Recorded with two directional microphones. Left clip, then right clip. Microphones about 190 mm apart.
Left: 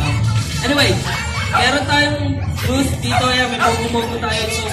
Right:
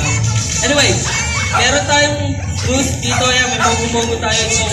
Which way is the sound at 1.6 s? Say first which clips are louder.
Right 2 dB; 55° left (ahead or behind).